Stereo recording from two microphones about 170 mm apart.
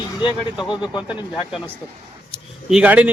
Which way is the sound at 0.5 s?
5° right (ahead or behind).